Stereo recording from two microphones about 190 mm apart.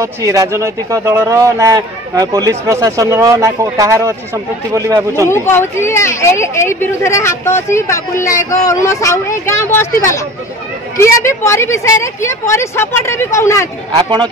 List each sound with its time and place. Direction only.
0.0 s a man's voice: 15° right (ahead or behind)
5.3 s a woman's voice: 15° left (ahead or behind)
13.9 s speech: 25° right (ahead or behind)